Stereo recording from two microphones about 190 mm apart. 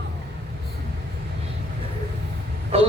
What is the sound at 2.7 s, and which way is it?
Speech, 35° right (ahead or behind).